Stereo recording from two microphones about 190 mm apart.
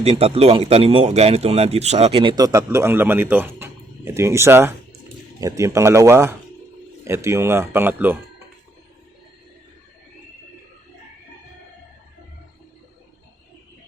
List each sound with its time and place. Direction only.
0.0 s speech: 30° right (ahead or behind); by 8.1 s 10° right (ahead or behind)